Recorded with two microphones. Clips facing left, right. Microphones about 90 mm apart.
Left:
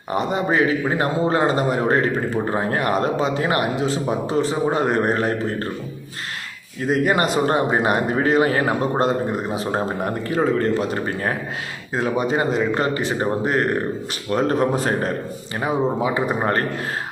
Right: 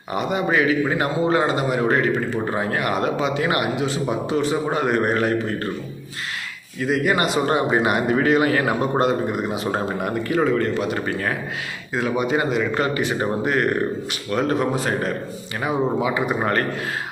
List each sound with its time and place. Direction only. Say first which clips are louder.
0.1 s a man's voice: left 1 dB; 35° left (ahead or behind)
6.8 s a man's voice: left 1 dB; 40° left (ahead or behind)